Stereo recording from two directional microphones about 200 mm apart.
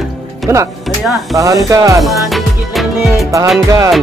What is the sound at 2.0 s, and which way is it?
Music, centre (ahead or behind).